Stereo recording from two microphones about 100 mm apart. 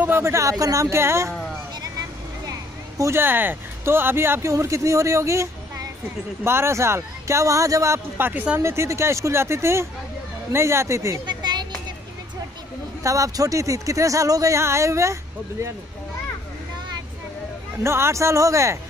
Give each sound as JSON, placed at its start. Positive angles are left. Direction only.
{"t": 0.0, "sound": "speech", "side_deg": -25}
{"t": 1.8, "sound": "vehicle", "side_deg": -40}
{"t": 3.0, "sound": "speech", "side_deg": -25}
{"t": 8.3, "sound": "speech", "side_deg": -15}
{"t": 8.5, "sound": "speech", "side_deg": -25}
{"t": 11.2, "sound": "music", "side_deg": -45}
{"t": 13.0, "sound": "speech", "side_deg": -35}
{"t": 17.8, "sound": "speech", "side_deg": -25}